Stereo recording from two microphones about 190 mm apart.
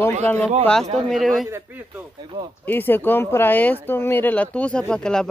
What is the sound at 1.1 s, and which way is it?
Speech, centre (ahead or behind).